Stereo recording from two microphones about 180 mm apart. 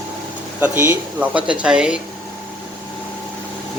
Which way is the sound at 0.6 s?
10° right (ahead or behind).